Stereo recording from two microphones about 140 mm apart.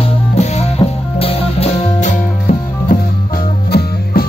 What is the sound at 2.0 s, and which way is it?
Music, 60° left (ahead or behind).